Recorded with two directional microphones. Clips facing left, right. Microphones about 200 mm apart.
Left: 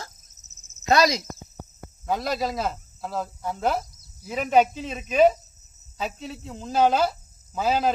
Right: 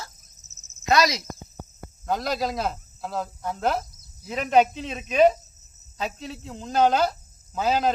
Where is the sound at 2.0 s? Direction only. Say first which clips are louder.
Even; 5° left (ahead or behind).